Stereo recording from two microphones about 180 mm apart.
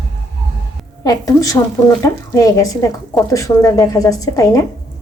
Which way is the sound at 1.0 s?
20° left (ahead or behind).